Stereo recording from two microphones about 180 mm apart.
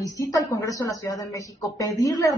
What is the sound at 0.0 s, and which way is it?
A woman's voice, 20° left (ahead or behind).